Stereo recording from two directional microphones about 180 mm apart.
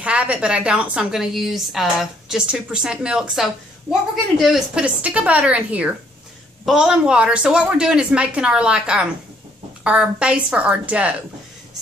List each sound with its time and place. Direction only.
0.0 s a woman's voice: 5° right (ahead or behind)